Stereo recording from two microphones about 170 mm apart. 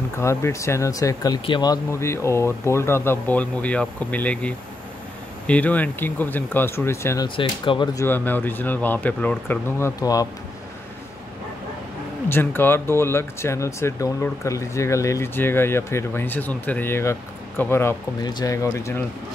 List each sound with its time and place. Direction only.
0.2 s speech: 15° left (ahead or behind)
7.2 s speech: 30° left (ahead or behind)
8.0 s speech: 10° left (ahead or behind)
12.3 s speech: 10° left (ahead or behind)